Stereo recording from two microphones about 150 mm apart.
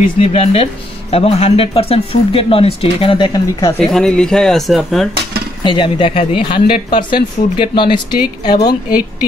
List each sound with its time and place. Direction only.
0.2 s speech: 40° left (ahead or behind)
3.8 s speech: 5° left (ahead or behind)
5.6 s a woman's voice: 35° left (ahead or behind)